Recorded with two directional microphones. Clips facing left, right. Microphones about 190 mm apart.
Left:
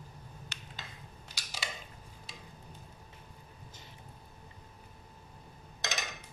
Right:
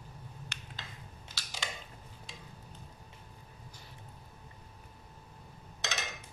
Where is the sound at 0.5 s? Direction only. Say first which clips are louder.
Right 1 dB; 55° right (ahead or behind).